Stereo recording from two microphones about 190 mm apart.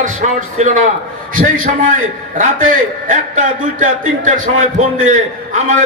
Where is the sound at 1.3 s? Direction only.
45° right (ahead or behind).